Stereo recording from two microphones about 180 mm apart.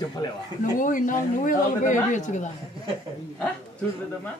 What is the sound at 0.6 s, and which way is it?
A woman's voice, 45° left (ahead or behind).